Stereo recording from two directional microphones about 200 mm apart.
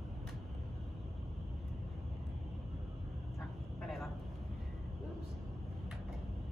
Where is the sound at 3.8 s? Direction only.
Centre (ahead or behind).